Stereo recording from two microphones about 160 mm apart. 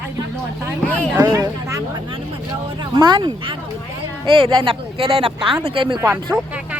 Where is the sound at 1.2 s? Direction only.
25° right (ahead or behind).